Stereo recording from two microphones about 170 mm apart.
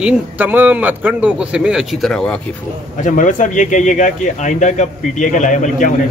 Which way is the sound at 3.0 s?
45° left (ahead or behind).